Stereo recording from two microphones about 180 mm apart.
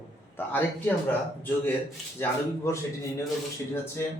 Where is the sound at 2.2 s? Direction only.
15° left (ahead or behind).